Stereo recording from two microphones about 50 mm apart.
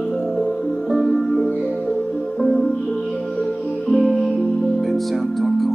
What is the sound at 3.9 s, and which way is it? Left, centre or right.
Music, centre.